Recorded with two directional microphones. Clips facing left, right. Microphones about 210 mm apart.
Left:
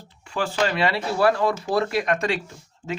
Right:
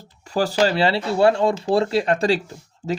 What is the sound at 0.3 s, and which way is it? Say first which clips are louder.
Speech: right 5 dB; 40° right (ahead or behind).